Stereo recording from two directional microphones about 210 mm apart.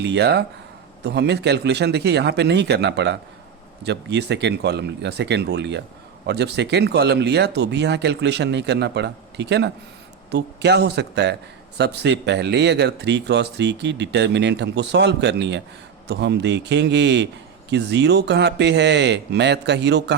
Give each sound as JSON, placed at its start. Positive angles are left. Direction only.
{"t": 0.0, "sound": "speech", "side_deg": -55}